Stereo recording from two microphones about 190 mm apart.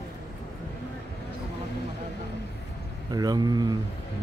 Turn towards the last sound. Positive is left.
turn(degrees=-20)  # may be behind; listen again after turning